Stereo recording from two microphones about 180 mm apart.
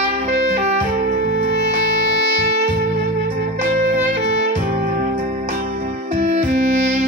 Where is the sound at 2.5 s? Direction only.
40° right (ahead or behind).